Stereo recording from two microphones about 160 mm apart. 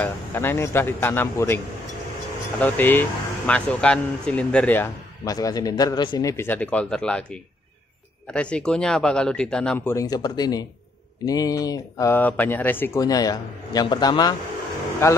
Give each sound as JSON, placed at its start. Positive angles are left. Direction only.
{"t": 0.0, "sound": "speech", "side_deg": 15}
{"t": 2.6, "sound": "speech", "side_deg": 10}
{"t": 5.2, "sound": "speech", "side_deg": 20}
{"t": 9.9, "sound": "a man's voice", "side_deg": 25}
{"t": 13.0, "sound": "a man's voice", "side_deg": 25}